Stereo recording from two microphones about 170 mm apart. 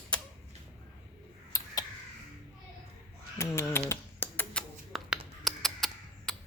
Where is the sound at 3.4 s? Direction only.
15° left (ahead or behind).